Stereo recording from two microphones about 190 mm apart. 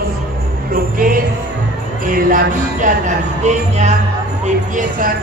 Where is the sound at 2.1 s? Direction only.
45° right (ahead or behind).